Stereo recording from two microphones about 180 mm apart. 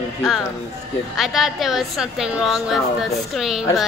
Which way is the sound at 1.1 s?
Centre (ahead or behind).